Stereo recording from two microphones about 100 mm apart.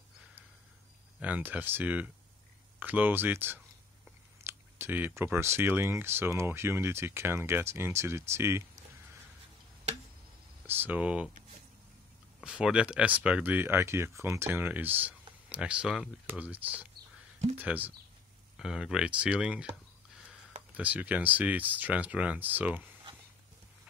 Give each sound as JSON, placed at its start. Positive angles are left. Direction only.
{"t": 1.2, "sound": "speech", "side_deg": -15}
{"t": 10.7, "sound": "speech", "side_deg": -20}
{"t": 12.4, "sound": "speech", "side_deg": -10}
{"t": 18.6, "sound": "speech", "side_deg": -5}